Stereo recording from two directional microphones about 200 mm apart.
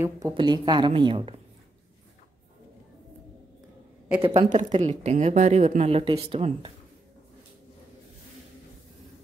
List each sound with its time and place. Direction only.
0.3 s speech: 20° right (ahead or behind)
4.2 s a woman's voice: 35° right (ahead or behind)